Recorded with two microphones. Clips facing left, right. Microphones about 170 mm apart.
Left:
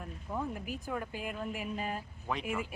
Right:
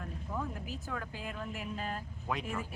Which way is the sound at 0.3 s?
15° left (ahead or behind).